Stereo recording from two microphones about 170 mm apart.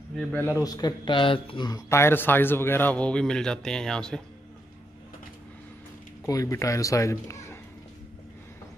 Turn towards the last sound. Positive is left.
turn(degrees=15)  # may be behind; listen again after turning